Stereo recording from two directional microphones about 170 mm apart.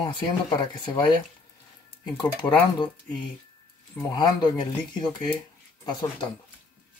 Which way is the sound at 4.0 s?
25° left (ahead or behind).